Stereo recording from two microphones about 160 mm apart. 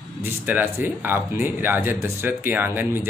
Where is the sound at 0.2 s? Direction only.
10° right (ahead or behind).